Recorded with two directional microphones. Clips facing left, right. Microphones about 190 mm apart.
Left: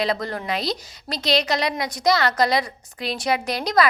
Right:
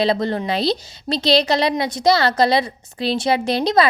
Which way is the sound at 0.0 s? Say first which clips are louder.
Right 6 dB; 30° right (ahead or behind).